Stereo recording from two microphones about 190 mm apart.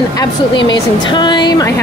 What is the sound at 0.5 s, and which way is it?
Speech, 75° left (ahead or behind).